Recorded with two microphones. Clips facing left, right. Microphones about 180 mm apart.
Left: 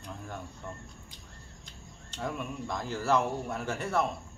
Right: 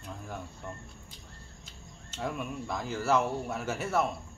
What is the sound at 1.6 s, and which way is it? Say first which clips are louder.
Speech: even; 5° right (ahead or behind).